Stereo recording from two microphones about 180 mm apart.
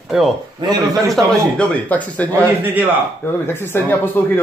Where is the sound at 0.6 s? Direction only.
20° right (ahead or behind).